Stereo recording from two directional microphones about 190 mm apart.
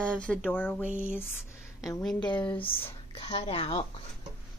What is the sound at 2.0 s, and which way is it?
Speech, 5° left (ahead or behind).